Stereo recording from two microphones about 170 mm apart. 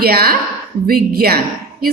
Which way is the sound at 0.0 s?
65° right (ahead or behind).